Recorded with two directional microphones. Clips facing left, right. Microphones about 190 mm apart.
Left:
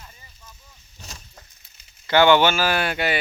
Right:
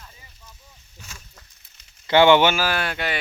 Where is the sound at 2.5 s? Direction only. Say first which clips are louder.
Left 2 dB; centre (ahead or behind).